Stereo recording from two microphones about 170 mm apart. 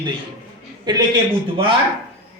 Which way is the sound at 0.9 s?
25° right (ahead or behind).